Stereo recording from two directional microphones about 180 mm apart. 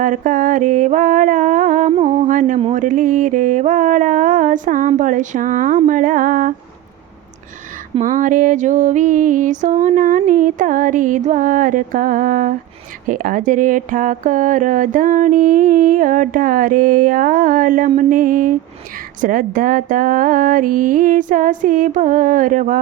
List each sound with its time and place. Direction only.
0.0 s speech: 45° right (ahead or behind)
1.9 s speech: 35° right (ahead or behind)
2.6 s a sound: 35° right (ahead or behind)
2.8 s speech: 45° right (ahead or behind)
7.9 s speech: 45° right (ahead or behind)